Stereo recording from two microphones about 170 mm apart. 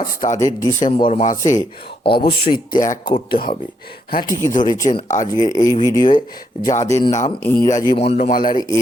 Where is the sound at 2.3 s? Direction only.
30° left (ahead or behind).